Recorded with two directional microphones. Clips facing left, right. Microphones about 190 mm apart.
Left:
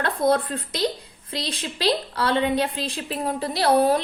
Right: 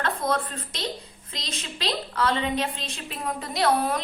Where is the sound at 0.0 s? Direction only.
35° left (ahead or behind).